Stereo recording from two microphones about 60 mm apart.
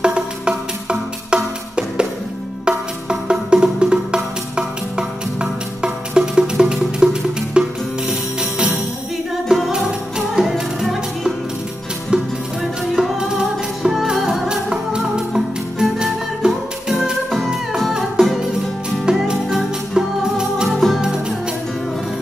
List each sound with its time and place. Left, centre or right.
0.0 s music: centre
8.1 s jingle bell: centre
9.5 s music: centre
12.9 s music: centre
14.5 s music: centre
20.6 s music: centre